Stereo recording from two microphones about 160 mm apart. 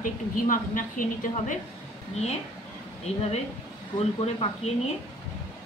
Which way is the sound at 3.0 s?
40° left (ahead or behind).